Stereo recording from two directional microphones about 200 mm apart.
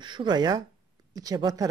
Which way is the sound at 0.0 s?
25° right (ahead or behind).